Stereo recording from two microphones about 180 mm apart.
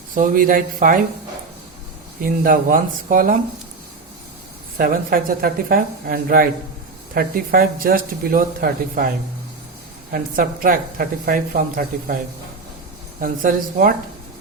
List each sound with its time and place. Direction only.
0.1 s speech: 50° right (ahead or behind)
2.2 s speech: 50° right (ahead or behind)
4.8 s speech: 50° right (ahead or behind)
13.2 s speech: 50° right (ahead or behind)